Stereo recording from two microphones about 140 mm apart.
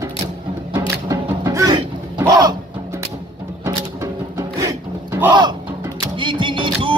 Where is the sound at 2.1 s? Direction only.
25° right (ahead or behind).